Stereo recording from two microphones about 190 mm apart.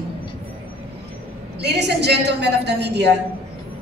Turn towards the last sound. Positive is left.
turn(degrees=-65)  # may be behind; listen again after turning